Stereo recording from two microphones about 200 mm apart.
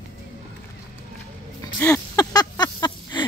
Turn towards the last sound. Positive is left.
turn(degrees=20)  # may be behind; listen again after turning